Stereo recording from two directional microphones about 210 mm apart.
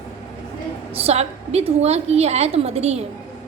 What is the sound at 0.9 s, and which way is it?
A woman's voice, 30° right (ahead or behind).